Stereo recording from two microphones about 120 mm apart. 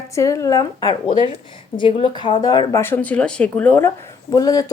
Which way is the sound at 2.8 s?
15° left (ahead or behind).